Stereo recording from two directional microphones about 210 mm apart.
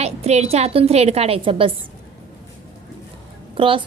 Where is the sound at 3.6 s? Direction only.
25° right (ahead or behind).